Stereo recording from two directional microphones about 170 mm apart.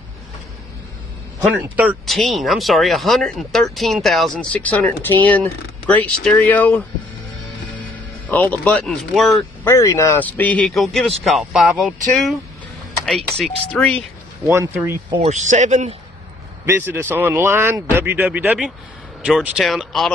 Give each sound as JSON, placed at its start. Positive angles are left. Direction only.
{"t": 1.5, "sound": "speech", "side_deg": -10}
{"t": 8.3, "sound": "speech", "side_deg": 10}
{"t": 9.7, "sound": "a man's voice", "side_deg": 15}
{"t": 14.5, "sound": "speech", "side_deg": -15}
{"t": 15.1, "sound": "a man's voice", "side_deg": -45}
{"t": 16.6, "sound": "speech", "side_deg": -15}